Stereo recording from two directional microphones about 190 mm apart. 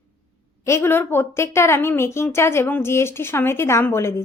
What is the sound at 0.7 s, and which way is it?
A woman's voice, 15° left (ahead or behind).